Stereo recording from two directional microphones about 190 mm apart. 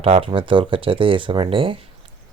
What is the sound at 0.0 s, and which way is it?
Speech, 30° right (ahead or behind).